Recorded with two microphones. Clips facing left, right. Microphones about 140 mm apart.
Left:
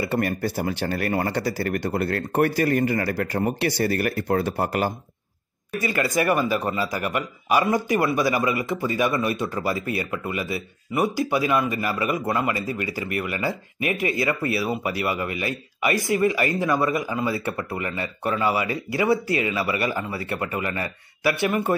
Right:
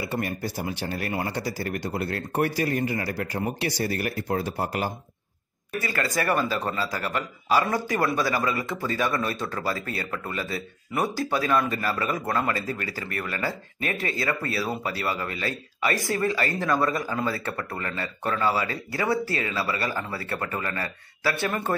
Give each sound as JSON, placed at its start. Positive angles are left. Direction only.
{"t": 0.0, "sound": "speech", "side_deg": 60}
{"t": 5.8, "sound": "a man's voice", "side_deg": 20}
{"t": 16.7, "sound": "a man's voice", "side_deg": 0}
{"t": 17.0, "sound": "a man's voice", "side_deg": 10}